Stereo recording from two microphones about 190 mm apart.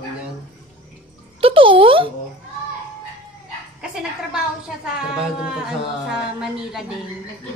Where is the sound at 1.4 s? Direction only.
30° right (ahead or behind).